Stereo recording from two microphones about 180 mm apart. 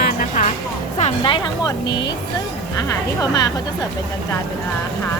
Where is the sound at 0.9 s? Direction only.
35° left (ahead or behind).